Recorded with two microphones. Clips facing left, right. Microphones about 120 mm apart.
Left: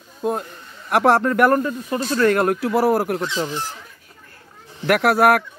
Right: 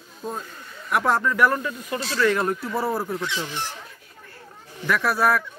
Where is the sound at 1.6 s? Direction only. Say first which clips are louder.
Left 5 dB; 40° left (ahead or behind); by 3.2 s 85° left.